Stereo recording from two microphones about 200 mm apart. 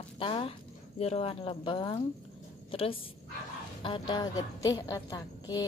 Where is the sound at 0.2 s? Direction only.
30° left (ahead or behind).